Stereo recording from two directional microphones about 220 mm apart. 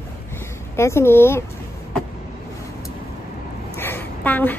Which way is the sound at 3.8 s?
10° left (ahead or behind).